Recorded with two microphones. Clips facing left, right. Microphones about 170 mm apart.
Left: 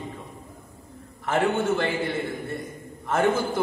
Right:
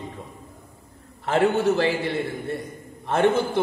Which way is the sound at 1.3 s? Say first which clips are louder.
Right 3 dB; 35° right (ahead or behind).